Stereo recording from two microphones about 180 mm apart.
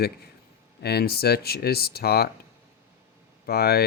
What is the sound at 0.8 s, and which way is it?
Speech, 60° left (ahead or behind).